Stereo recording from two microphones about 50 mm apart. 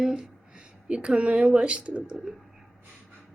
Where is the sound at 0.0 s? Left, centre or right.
Centre.